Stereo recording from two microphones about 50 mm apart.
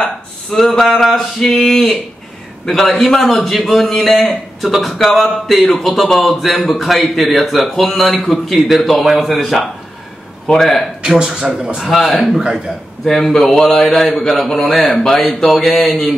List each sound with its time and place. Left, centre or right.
0.6 s a man's voice: centre
11.1 s a man's voice: centre
11.8 s a man's voice: centre
12.3 s a man's voice: centre
13.0 s a man's voice: centre
13.8 s a man's voice: centre